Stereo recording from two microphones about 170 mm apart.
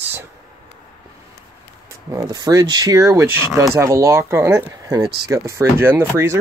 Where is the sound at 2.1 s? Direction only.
20° right (ahead or behind).